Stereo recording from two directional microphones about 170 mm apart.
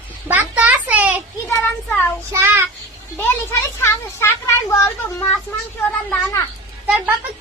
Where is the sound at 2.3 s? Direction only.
15° right (ahead or behind).